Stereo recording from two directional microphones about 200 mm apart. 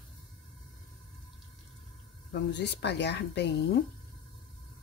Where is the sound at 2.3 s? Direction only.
55° left (ahead or behind).